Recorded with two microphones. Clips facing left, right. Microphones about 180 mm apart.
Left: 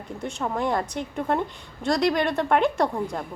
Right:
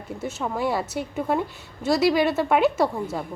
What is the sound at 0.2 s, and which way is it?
A woman's voice, 5° right (ahead or behind).